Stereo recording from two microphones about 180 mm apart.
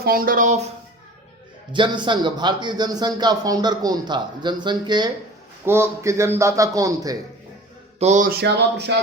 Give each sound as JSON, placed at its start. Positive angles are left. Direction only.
{"t": 0.0, "sound": "speech", "side_deg": -55}
{"t": 1.7, "sound": "speech", "side_deg": -25}
{"t": 5.6, "sound": "a man's voice", "side_deg": -15}
{"t": 7.9, "sound": "speech", "side_deg": -40}